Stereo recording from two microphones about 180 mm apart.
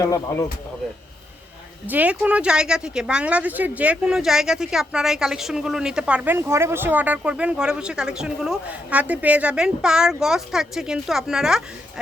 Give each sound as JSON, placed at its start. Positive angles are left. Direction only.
{"t": 0.0, "sound": "speech", "side_deg": 15}
{"t": 1.9, "sound": "speech", "side_deg": -10}